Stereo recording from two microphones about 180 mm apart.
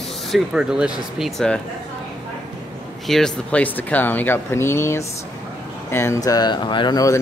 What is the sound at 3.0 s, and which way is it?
Speech, centre (ahead or behind).